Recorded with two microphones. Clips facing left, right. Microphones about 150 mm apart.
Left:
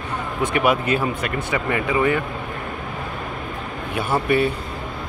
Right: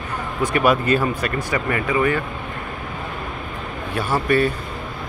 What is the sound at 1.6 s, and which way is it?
Speech, 20° left (ahead or behind).